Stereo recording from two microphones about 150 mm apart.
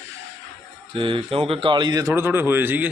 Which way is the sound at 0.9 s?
35° right (ahead or behind).